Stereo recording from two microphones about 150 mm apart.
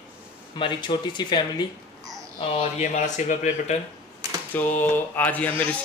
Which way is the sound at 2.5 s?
50° left (ahead or behind).